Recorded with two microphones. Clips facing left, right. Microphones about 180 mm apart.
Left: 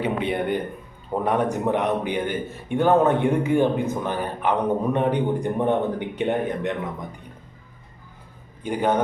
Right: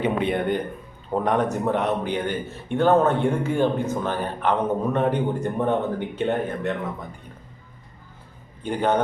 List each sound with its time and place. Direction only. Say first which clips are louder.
0.3 s a man's voice: right 1 dB; 10° left (ahead or behind)
8.6 s a man's voice: even; 10° left (ahead or behind)